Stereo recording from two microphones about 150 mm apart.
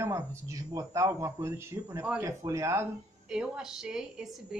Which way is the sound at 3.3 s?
5° right (ahead or behind).